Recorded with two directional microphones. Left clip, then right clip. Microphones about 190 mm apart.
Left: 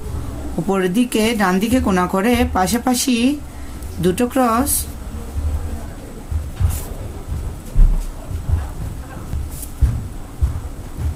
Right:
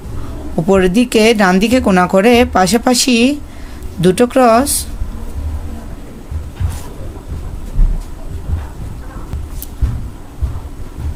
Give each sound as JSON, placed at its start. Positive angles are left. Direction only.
{"t": 0.7, "sound": "speech", "side_deg": -50}